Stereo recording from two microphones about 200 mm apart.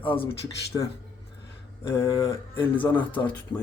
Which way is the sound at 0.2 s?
20° left (ahead or behind).